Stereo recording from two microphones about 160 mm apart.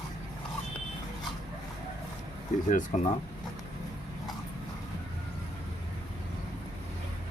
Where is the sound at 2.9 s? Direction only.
45° left (ahead or behind).